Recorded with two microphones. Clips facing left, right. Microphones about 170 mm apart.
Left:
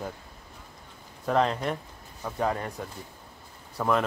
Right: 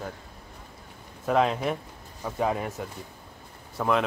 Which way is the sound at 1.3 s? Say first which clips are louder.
Right 1 dB; 5° right (ahead or behind).